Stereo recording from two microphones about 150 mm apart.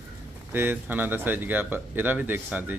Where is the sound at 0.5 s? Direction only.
15° right (ahead or behind).